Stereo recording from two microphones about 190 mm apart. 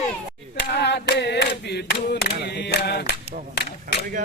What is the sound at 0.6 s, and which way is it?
Choir, 65° left (ahead or behind).